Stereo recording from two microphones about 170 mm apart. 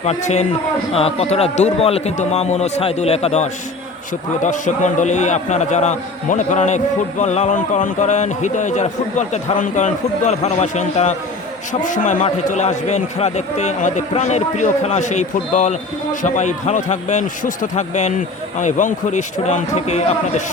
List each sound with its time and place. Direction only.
0.0 s a man's voice: 40° left (ahead or behind)